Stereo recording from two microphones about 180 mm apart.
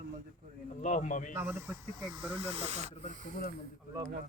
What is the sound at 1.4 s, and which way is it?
Speech, 15° right (ahead or behind).